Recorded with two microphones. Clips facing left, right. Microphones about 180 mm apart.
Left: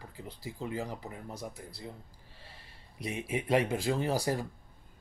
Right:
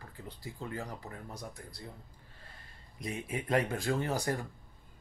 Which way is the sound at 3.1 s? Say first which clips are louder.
Left 3 dB; 20° left (ahead or behind).